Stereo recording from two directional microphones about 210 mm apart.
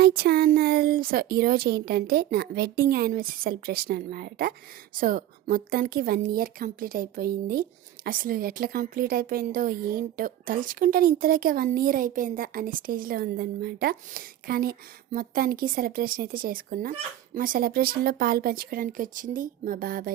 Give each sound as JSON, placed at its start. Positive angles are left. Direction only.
{"t": 0.0, "sound": "a woman's voice", "side_deg": -45}